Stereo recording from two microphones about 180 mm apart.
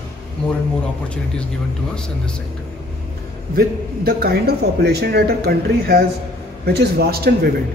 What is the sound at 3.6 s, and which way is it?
A man's voice, 60° right (ahead or behind).